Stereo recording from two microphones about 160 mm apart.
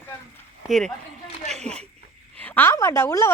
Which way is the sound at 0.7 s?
Centre (ahead or behind).